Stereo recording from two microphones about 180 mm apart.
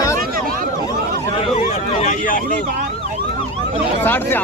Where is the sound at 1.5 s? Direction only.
40° left (ahead or behind).